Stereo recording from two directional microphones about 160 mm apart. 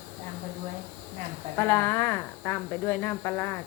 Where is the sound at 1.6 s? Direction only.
15° left (ahead or behind).